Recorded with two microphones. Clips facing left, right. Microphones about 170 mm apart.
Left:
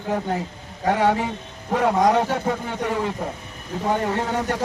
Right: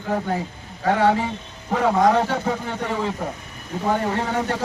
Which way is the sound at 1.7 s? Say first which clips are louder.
Even; centre (ahead or behind).